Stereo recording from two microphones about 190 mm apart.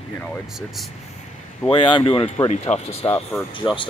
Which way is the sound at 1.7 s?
25° left (ahead or behind).